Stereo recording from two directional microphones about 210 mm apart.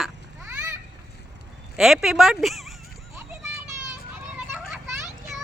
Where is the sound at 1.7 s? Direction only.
Centre (ahead or behind).